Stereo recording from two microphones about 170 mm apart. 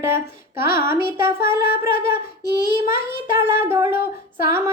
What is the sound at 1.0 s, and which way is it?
Female singing, 15° right (ahead or behind).